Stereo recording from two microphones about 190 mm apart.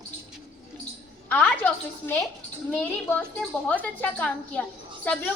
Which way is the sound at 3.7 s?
10° left (ahead or behind).